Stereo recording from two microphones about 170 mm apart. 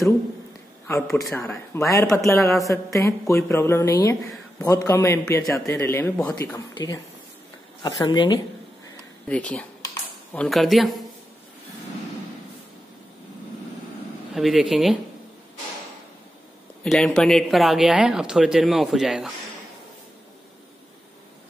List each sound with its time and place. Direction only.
1.1 s a woman's voice: 15° left (ahead or behind)
6.4 s speech: 20° left (ahead or behind)
9.3 s a woman's voice: 5° left (ahead or behind)
14.3 s speech: centre (ahead or behind)
16.8 s speech: 5° left (ahead or behind)